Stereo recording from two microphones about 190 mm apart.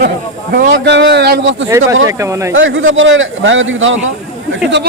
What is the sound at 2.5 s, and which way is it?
A man's voice, 90° right.